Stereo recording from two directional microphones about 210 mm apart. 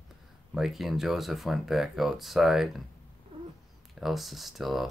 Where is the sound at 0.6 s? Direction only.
Centre (ahead or behind).